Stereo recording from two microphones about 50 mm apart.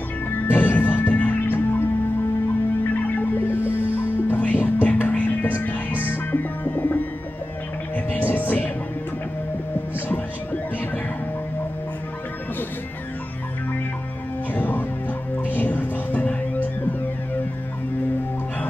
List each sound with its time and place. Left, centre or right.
0.3 s music: left
8.3 s music: left
14.5 s music: left